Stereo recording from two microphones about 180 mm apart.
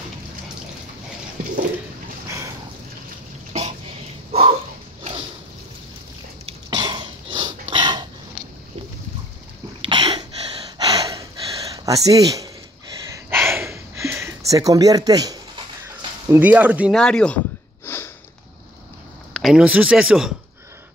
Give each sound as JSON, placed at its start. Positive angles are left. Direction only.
{"t": 2.2, "sound": "boat", "side_deg": -15}
{"t": 4.3, "sound": "a sound", "side_deg": -35}
{"t": 6.4, "sound": "throat clearing", "side_deg": -25}
{"t": 7.7, "sound": "a sound", "side_deg": -25}
{"t": 9.8, "sound": "a sound", "side_deg": -25}
{"t": 10.8, "sound": "gasp", "side_deg": -20}
{"t": 11.7, "sound": "speech", "side_deg": -20}
{"t": 13.1, "sound": "a sound", "side_deg": -15}
{"t": 16.3, "sound": "speech", "side_deg": -10}
{"t": 17.0, "sound": "speech", "side_deg": 5}
{"t": 17.8, "sound": "sniff", "side_deg": 15}
{"t": 19.3, "sound": "speech", "side_deg": -5}